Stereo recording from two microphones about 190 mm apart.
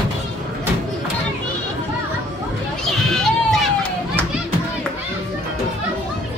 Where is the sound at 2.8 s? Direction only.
5° left (ahead or behind).